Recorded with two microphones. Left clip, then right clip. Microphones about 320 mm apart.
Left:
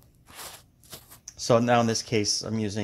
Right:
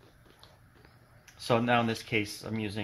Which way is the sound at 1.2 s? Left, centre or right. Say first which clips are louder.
Left 6 dB; left.